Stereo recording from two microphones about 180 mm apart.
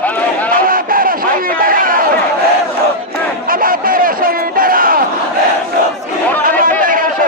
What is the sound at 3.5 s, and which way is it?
Crowd, 50° right (ahead or behind).